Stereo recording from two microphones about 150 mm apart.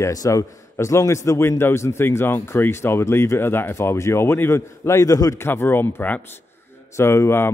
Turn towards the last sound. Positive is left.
turn(degrees=15)  # may be behind; listen again after turning